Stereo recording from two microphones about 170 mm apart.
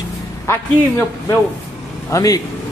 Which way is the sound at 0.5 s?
15° left (ahead or behind).